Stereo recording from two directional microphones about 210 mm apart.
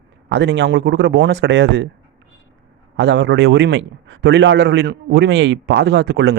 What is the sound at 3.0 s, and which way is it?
A man's voice, 55° right (ahead or behind).